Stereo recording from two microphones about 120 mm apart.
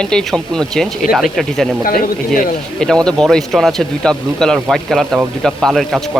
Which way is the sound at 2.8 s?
5° left (ahead or behind).